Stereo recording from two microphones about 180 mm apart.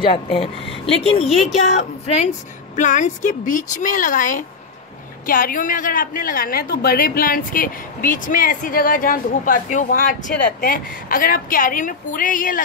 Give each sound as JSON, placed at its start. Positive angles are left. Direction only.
{"t": 0.1, "sound": "a woman's voice", "side_deg": 30}